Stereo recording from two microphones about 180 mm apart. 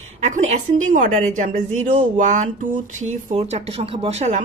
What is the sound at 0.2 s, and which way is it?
A woman's voice, 40° right (ahead or behind).